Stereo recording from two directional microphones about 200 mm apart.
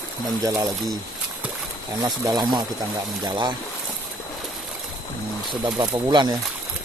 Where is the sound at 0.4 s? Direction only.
20° right (ahead or behind).